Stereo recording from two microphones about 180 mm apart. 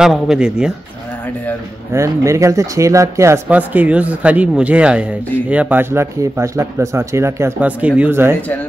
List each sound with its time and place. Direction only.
0.0 s a man's voice: 5° right (ahead or behind)
1.9 s speech: 15° right (ahead or behind)